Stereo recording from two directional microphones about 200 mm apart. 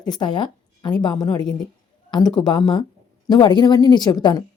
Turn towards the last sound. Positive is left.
turn(degrees=20)  # may be behind; listen again after turning